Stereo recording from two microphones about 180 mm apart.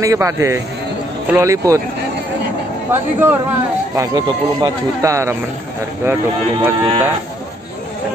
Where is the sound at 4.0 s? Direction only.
25° right (ahead or behind).